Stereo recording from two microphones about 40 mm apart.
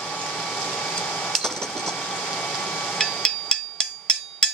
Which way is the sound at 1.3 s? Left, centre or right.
Centre.